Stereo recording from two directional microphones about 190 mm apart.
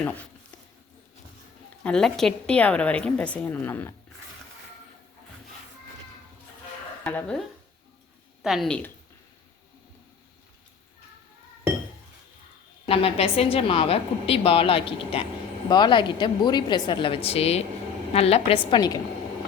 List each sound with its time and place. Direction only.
1.8 s a woman's voice: 5° left (ahead or behind)
7.0 s speech: 10° left (ahead or behind)
12.9 s a woman's voice: 30° left (ahead or behind)
18.7 s a woman's voice: 20° left (ahead or behind)